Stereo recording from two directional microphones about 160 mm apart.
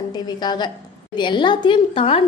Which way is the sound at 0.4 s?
25° left (ahead or behind).